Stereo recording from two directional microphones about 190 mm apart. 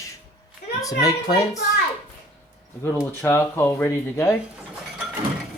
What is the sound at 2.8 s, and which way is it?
Speech, 15° left (ahead or behind).